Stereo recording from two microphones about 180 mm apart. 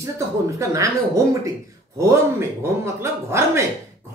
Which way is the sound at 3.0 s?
15° right (ahead or behind).